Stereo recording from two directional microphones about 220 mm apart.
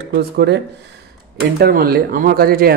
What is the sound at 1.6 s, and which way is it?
Speech, 45° right (ahead or behind).